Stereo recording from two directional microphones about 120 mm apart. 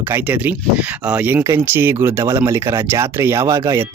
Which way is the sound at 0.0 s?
15° right (ahead or behind).